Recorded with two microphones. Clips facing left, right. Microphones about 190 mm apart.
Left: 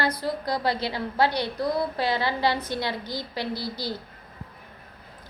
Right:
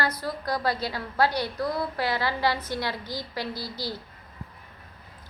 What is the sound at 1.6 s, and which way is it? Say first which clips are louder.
A woman's voice: left 4 dB; 15° left (ahead or behind).